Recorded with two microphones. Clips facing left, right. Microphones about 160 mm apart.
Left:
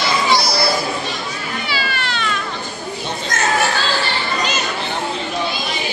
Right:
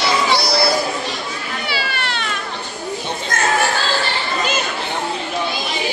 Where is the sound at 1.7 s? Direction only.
60° right (ahead or behind).